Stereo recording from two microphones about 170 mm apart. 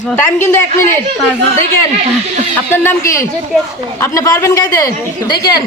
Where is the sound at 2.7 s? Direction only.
15° left (ahead or behind).